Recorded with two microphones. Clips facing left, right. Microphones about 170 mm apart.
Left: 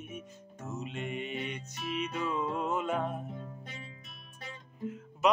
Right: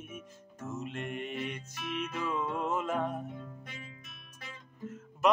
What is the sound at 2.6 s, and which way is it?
Music, centre (ahead or behind).